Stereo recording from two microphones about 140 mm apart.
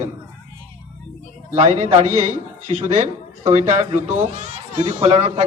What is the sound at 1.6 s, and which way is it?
Speech, 55° right (ahead or behind).